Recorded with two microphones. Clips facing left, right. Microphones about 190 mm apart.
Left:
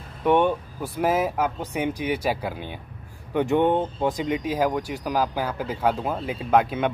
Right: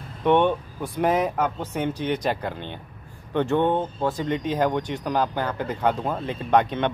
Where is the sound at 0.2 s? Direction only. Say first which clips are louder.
Right 1 dB; 10° left (ahead or behind).